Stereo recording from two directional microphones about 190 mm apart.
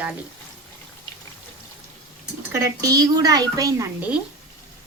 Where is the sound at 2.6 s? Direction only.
20° right (ahead or behind).